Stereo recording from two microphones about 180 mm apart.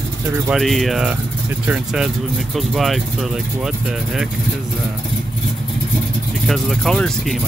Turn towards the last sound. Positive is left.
turn(degrees=0)  # may be behind; listen again after turning